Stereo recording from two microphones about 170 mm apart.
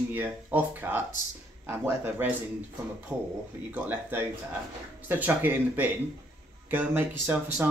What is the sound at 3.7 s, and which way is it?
Speech, 10° right (ahead or behind).